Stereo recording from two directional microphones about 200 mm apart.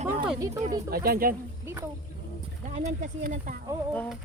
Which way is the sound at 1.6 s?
15° right (ahead or behind).